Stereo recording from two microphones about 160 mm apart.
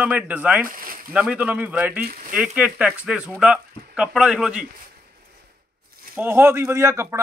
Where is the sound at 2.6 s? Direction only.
5° right (ahead or behind).